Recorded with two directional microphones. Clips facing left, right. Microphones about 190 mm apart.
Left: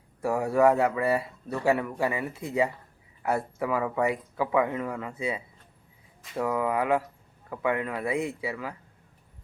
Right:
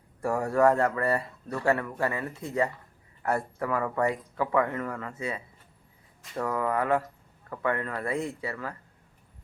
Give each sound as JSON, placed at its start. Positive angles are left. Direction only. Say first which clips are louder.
{"t": 0.2, "sound": "speech", "louder": "left 1 dB", "side_deg": 5}